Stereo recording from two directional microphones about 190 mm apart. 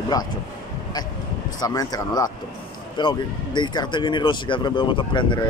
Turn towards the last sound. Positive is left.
turn(degrees=25)  # may be behind; listen again after turning